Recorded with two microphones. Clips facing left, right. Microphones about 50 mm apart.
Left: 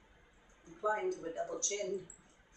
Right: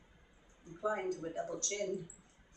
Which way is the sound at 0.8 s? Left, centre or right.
Centre.